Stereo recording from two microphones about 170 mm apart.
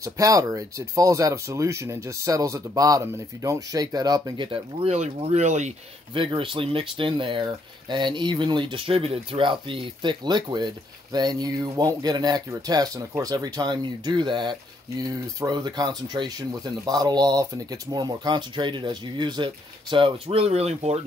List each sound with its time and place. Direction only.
0.0 s speech: 20° right (ahead or behind); by 5.8 s 45° right (ahead or behind)
6.1 s speech: 30° right (ahead or behind)